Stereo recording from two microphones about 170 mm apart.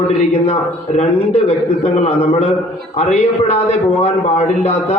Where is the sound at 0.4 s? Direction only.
35° left (ahead or behind).